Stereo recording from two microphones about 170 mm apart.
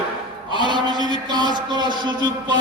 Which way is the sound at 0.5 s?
25° right (ahead or behind).